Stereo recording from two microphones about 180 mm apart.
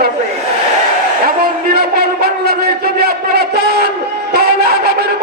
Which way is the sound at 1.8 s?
60° right (ahead or behind).